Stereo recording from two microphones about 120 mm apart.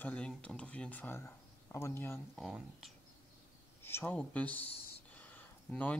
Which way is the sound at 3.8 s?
20° left (ahead or behind).